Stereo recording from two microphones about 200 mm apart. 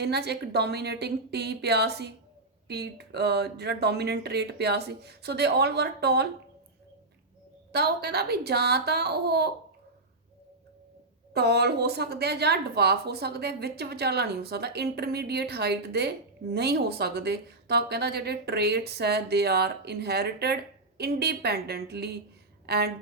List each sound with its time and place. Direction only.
0.0 s a woman's voice: 55° right (ahead or behind)
7.7 s a child's voice: 55° right (ahead or behind)
11.3 s a woman's voice: 55° right (ahead or behind)